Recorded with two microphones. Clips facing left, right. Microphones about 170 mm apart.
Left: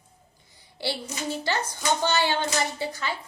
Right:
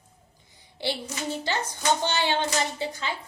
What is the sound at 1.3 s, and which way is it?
A woman's voice, 20° right (ahead or behind).